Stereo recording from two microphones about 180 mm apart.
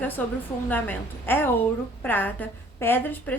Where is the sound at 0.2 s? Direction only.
10° left (ahead or behind).